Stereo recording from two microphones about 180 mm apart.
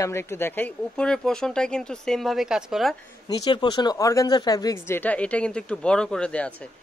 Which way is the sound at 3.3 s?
25° left (ahead or behind).